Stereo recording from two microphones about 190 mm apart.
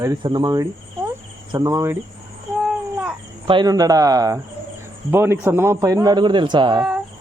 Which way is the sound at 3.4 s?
25° right (ahead or behind).